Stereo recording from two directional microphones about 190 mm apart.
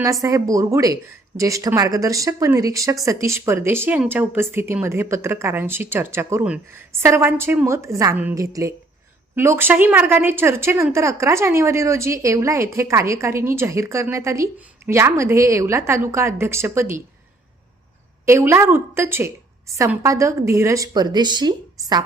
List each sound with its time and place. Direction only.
0.0 s speech: 15° right (ahead or behind)
18.3 s speech: 15° right (ahead or behind)